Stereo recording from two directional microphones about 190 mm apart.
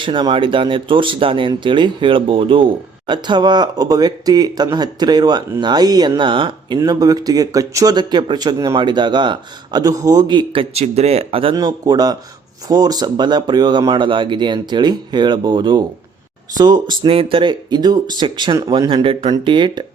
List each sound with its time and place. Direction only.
0.0 s speech: 25° right (ahead or behind)